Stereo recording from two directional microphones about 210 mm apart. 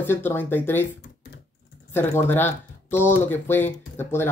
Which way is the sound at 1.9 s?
10° left (ahead or behind).